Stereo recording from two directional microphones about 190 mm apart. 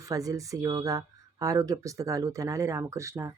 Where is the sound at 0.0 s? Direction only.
20° right (ahead or behind).